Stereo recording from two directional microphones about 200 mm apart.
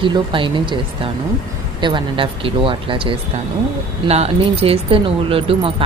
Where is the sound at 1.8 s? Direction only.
25° right (ahead or behind).